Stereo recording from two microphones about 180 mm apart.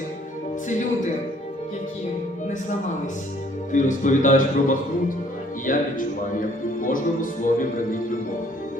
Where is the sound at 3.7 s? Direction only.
45° left (ahead or behind).